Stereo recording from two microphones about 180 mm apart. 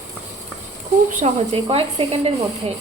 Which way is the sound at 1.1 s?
35° right (ahead or behind).